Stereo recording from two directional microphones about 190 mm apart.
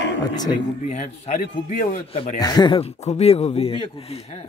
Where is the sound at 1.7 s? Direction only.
45° left (ahead or behind).